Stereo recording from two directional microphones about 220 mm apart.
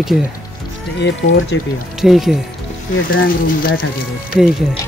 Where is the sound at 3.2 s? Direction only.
40° left (ahead or behind).